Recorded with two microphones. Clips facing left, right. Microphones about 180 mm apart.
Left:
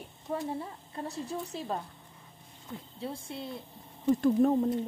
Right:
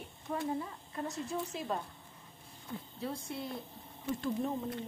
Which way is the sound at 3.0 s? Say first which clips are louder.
Left 1 dB; 25° left (ahead or behind).